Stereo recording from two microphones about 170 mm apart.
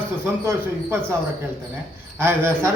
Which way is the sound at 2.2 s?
15° right (ahead or behind).